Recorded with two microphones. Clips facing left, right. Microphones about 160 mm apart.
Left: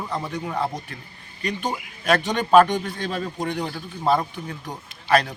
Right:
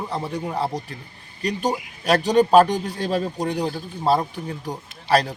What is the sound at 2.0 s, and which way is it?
Speech, 35° right (ahead or behind).